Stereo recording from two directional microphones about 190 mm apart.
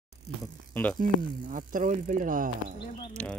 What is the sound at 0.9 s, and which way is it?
Speech, 45° right (ahead or behind).